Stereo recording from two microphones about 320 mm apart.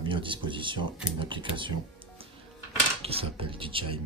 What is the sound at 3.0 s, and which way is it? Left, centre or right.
Speech, centre.